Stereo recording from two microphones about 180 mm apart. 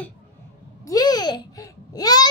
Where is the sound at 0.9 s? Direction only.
20° left (ahead or behind).